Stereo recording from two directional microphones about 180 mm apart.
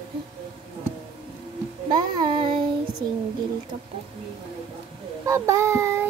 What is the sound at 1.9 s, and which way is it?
Music, 25° right (ahead or behind).